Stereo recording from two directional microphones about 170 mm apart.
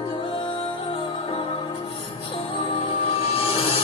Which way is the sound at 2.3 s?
35° left (ahead or behind).